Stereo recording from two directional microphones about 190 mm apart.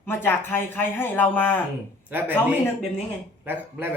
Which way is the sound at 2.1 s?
10° right (ahead or behind).